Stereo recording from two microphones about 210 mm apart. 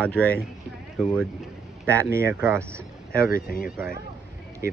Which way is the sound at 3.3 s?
45° left (ahead or behind).